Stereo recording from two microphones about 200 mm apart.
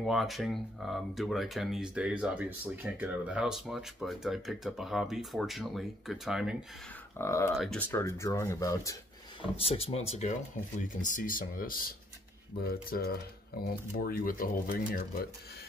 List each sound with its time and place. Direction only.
0.0 s speech: centre (ahead or behind)
7.2 s speech: 15° left (ahead or behind)
7.5 s speech: centre (ahead or behind)
9.6 s speech: 30° left (ahead or behind); by 14.8 s 45° left (ahead or behind)